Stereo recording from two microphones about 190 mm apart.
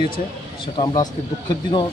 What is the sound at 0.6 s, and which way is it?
Speech, 25° left (ahead or behind).